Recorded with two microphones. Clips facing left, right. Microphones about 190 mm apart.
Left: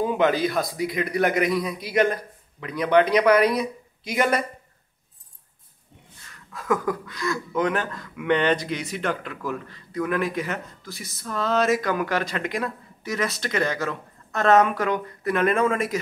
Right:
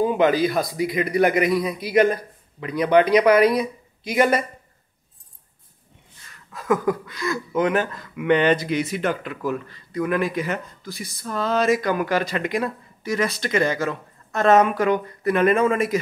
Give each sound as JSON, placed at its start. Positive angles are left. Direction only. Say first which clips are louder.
{"t": 0.0, "sound": "speech", "louder": "right 3 dB", "side_deg": 0}
{"t": 6.7, "sound": "speech", "louder": "right 3 dB", "side_deg": -5}